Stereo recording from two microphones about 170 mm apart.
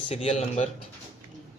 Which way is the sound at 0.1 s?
35° left (ahead or behind).